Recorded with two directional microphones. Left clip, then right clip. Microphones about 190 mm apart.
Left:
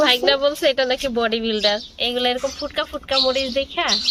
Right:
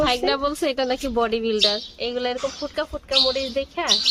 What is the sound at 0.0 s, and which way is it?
A woman's voice, 10° right (ahead or behind).